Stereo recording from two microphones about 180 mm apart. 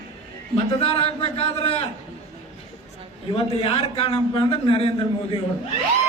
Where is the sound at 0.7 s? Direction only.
30° left (ahead or behind).